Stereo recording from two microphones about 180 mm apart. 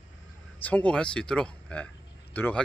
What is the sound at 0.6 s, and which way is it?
Speech, 5° left (ahead or behind).